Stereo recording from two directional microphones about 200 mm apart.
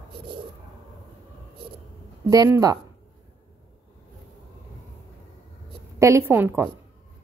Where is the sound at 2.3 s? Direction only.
15° right (ahead or behind).